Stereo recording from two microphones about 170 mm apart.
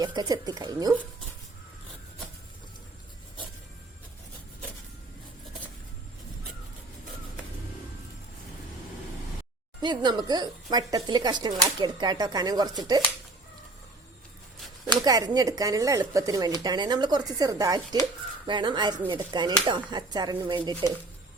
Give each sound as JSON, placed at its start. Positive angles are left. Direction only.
{"t": 0.0, "sound": "speech", "side_deg": -25}
{"t": 9.8, "sound": "speech", "side_deg": -25}
{"t": 15.0, "sound": "speech", "side_deg": -25}